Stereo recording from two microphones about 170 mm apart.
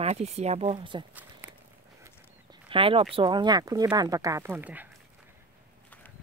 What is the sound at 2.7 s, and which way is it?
Speech, 35° right (ahead or behind).